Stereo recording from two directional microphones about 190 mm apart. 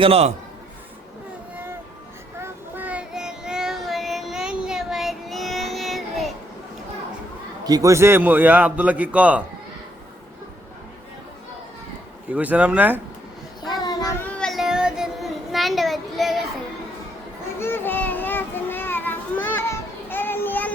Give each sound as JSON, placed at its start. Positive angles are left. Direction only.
{"t": 0.0, "sound": "a man's voice", "side_deg": -30}
{"t": 2.4, "sound": "child singing", "side_deg": -10}
{"t": 7.6, "sound": "a man's voice", "side_deg": -20}
{"t": 12.3, "sound": "a man's voice", "side_deg": -10}
{"t": 13.8, "sound": "child singing", "side_deg": 20}
{"t": 14.3, "sound": "child singing", "side_deg": 5}
{"t": 17.6, "sound": "a sound", "side_deg": 10}